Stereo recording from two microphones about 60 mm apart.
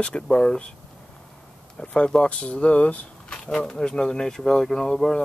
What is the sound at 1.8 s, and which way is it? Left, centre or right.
Speech, centre.